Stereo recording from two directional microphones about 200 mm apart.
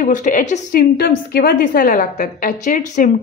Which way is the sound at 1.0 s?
50° left (ahead or behind).